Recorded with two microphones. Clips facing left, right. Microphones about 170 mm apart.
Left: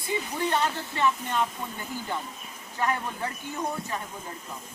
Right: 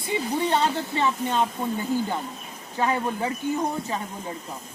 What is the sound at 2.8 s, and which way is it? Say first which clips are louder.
Speech: right 4 dB; 15° right (ahead or behind).